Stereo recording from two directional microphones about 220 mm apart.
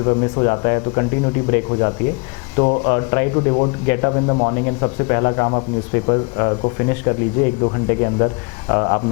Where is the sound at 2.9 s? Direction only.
15° left (ahead or behind).